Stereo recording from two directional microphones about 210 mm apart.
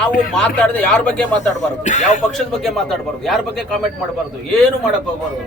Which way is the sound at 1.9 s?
35° left (ahead or behind).